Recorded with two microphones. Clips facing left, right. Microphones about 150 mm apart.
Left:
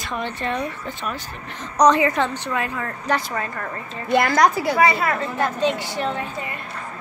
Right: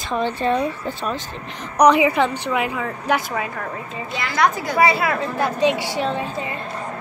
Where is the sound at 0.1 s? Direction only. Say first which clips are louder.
Right 6 dB; 30° right (ahead or behind).